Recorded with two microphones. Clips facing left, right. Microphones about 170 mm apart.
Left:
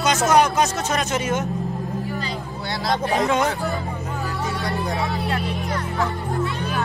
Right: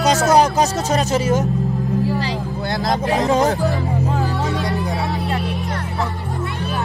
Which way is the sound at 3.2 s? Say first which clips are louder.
Right 6 dB; 35° right (ahead or behind).